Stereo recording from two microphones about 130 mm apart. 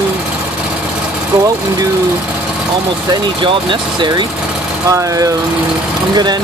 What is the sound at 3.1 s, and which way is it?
Speech, 40° right (ahead or behind).